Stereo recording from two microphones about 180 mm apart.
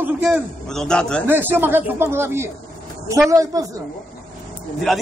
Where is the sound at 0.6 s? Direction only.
5° left (ahead or behind).